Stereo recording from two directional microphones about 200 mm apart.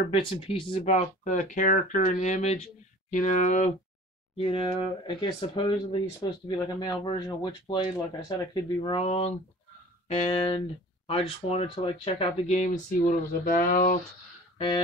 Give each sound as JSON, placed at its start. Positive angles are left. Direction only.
{"t": 0.1, "sound": "speech", "side_deg": 25}
{"t": 4.4, "sound": "speech", "side_deg": 25}